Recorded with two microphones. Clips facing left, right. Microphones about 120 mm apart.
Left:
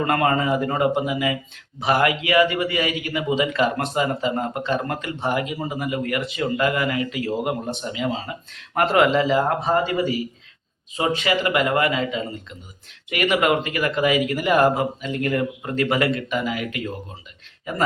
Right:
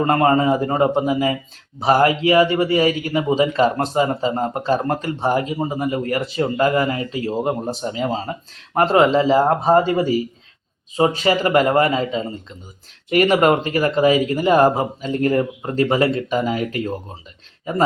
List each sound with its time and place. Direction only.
0.0 s a man's voice: 30° right (ahead or behind)